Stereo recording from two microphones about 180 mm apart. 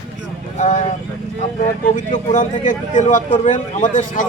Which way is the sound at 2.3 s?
45° left (ahead or behind).